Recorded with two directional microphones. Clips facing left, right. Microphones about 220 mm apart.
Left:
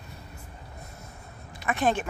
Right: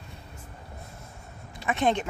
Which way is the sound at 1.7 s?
20° right (ahead or behind).